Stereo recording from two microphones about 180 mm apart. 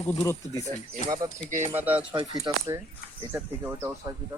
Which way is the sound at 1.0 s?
20° right (ahead or behind).